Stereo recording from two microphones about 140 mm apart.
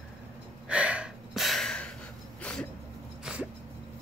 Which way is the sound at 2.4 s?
10° left (ahead or behind).